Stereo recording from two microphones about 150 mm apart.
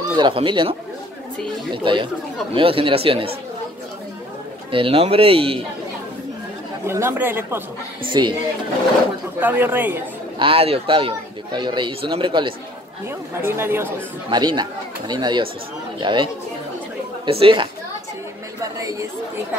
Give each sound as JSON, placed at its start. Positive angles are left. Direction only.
{"t": 0.1, "sound": "speech", "side_deg": -35}
{"t": 4.6, "sound": "speech", "side_deg": -35}
{"t": 6.9, "sound": "speech", "side_deg": -15}
{"t": 8.1, "sound": "speech", "side_deg": -30}
{"t": 9.4, "sound": "speech", "side_deg": -10}
{"t": 10.4, "sound": "speech", "side_deg": -40}
{"t": 13.5, "sound": "speech", "side_deg": -15}
{"t": 14.3, "sound": "speech", "side_deg": -30}
{"t": 17.3, "sound": "speech", "side_deg": -35}
{"t": 18.6, "sound": "speech", "side_deg": -20}